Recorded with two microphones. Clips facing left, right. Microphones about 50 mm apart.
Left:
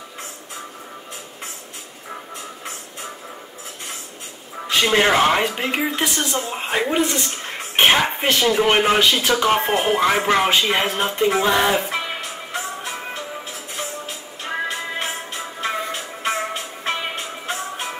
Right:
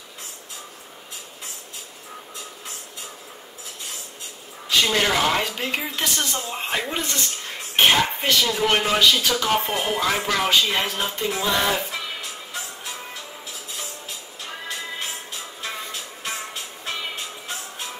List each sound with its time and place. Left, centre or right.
4.6 s speech: left
11.9 s music: left
14.4 s music: left